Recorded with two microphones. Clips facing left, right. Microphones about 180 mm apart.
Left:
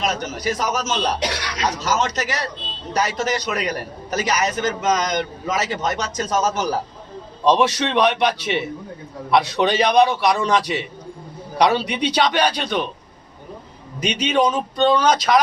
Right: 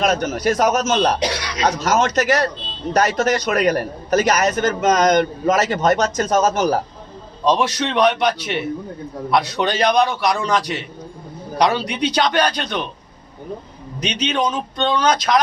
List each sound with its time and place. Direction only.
0.0 s a man's voice: 55° right (ahead or behind)
7.4 s a man's voice: 5° left (ahead or behind)
14.0 s a man's voice: 5° left (ahead or behind)